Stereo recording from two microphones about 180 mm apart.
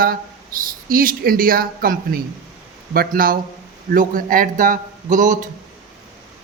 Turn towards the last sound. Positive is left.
turn(degrees=-45)  # may be behind; listen again after turning